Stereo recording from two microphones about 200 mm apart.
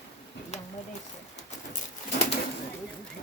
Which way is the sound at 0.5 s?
30° left (ahead or behind).